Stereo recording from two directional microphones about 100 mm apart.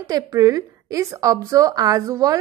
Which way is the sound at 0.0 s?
35° right (ahead or behind).